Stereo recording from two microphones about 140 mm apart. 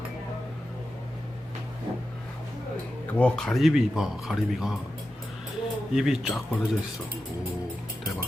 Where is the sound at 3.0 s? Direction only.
10° left (ahead or behind).